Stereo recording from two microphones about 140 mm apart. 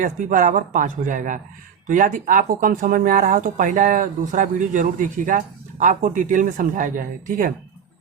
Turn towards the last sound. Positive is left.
turn(degrees=-70)  # may be behind; listen again after turning